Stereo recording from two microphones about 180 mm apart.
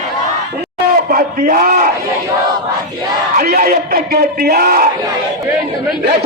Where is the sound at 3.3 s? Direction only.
50° right (ahead or behind).